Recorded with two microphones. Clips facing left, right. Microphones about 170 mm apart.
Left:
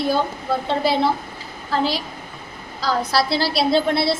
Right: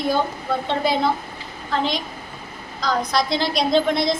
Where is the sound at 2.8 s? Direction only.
5° left (ahead or behind).